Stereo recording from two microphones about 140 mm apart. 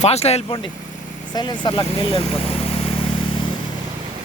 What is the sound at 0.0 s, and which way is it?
Speech, 50° left (ahead or behind).